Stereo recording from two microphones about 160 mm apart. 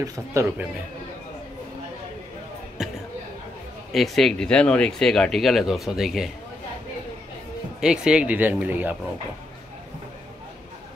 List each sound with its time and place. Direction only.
0.0 s speech: 20° right (ahead or behind)
2.8 s a sound: 5° right (ahead or behind)
3.9 s speech: centre (ahead or behind)
7.8 s speech: 5° right (ahead or behind)